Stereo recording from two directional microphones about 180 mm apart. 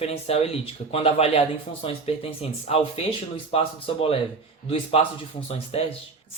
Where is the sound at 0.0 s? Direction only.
35° left (ahead or behind).